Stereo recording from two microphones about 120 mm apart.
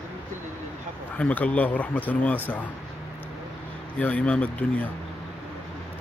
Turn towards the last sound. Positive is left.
turn(degrees=10)  # may be behind; listen again after turning